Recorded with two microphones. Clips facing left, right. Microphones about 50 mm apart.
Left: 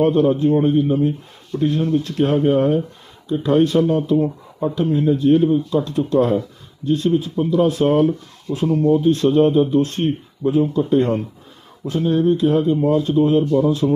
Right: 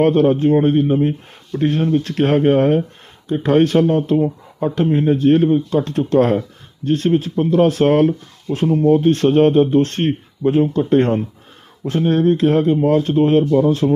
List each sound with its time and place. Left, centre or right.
0.0 s speech: right